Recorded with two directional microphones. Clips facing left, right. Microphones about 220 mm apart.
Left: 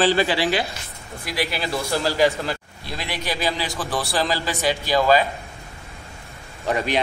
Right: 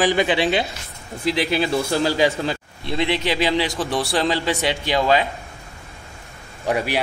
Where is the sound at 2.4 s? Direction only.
25° right (ahead or behind).